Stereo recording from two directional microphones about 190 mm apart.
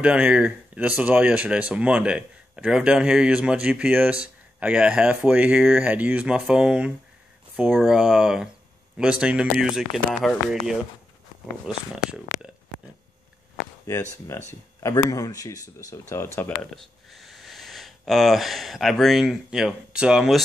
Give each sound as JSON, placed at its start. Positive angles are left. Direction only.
{"t": 0.0, "sound": "speech", "side_deg": -5}
{"t": 11.6, "sound": "speech", "side_deg": -5}
{"t": 14.3, "sound": "speech", "side_deg": 15}